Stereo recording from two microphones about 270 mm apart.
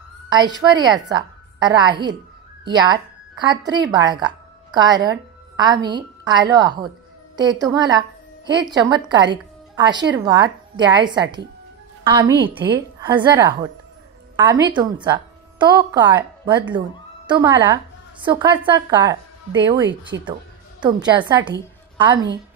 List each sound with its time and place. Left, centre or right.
0.3 s a woman's voice: centre
17.3 s a woman's voice: centre